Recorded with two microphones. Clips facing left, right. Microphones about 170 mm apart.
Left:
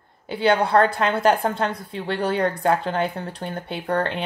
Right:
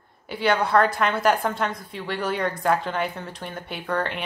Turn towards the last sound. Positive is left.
turn(degrees=30)  # may be behind; listen again after turning